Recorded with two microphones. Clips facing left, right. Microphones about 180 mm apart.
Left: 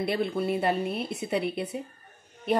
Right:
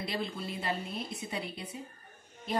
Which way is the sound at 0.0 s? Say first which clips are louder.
Left 9 dB; 60° left (ahead or behind).